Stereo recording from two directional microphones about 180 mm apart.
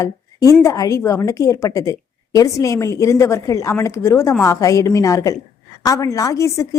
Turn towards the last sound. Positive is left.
turn(degrees=20)  # may be behind; listen again after turning